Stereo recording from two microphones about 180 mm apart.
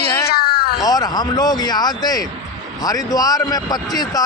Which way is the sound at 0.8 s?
20° left (ahead or behind).